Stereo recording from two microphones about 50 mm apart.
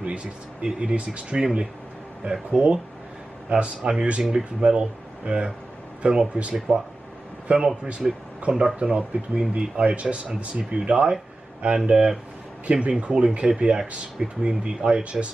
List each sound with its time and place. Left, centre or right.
0.0 s speech: right